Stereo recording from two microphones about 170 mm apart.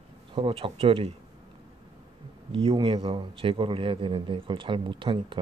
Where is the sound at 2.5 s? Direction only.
30° right (ahead or behind).